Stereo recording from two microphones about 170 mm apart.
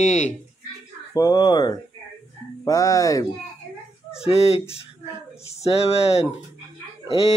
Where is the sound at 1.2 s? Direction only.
20° left (ahead or behind).